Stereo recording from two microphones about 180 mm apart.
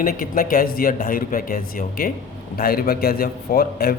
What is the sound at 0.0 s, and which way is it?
A man's voice, 55° left (ahead or behind).